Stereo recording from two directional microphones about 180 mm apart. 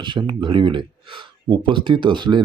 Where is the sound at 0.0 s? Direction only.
25° right (ahead or behind).